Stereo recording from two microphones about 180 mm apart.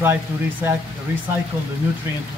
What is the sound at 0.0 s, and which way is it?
Speech, 15° right (ahead or behind).